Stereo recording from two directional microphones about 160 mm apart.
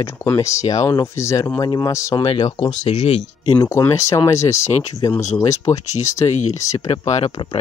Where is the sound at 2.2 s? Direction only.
30° left (ahead or behind).